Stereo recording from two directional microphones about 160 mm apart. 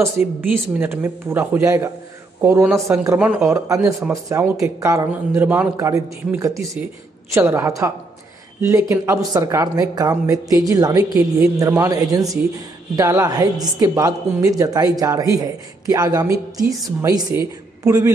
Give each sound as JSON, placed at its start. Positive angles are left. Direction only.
{"t": 0.0, "sound": "a man's voice", "side_deg": -15}